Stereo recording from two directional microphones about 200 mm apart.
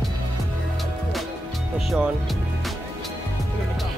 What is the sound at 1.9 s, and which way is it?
Music, centre (ahead or behind).